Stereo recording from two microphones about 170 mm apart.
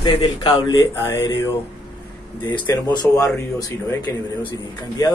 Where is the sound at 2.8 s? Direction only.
20° left (ahead or behind).